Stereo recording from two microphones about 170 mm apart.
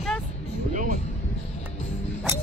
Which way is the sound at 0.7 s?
50° right (ahead or behind).